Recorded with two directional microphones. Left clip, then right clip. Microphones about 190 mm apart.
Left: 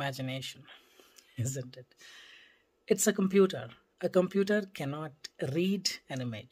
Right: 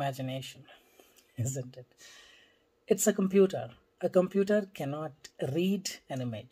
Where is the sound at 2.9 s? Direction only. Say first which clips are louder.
Right 1 dB; 15° left (ahead or behind).